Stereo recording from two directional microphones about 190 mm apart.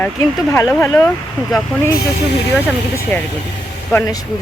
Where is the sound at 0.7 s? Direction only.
15° left (ahead or behind).